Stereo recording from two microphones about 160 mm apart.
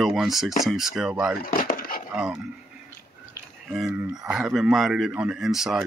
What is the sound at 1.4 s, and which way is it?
Wood, 60° left (ahead or behind).